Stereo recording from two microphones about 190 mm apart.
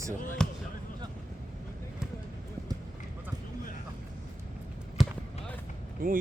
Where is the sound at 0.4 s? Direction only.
5° left (ahead or behind).